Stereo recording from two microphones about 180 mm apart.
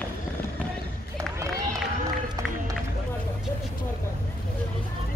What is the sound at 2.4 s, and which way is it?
Run, 20° right (ahead or behind).